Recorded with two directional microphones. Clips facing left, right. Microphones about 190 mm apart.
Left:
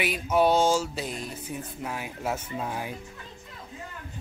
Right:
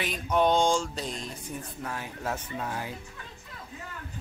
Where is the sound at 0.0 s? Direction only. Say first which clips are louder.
Left 2 dB; 10° left (ahead or behind).